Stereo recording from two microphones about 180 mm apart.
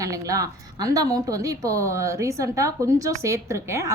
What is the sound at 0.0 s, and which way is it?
A woman's voice, 20° right (ahead or behind).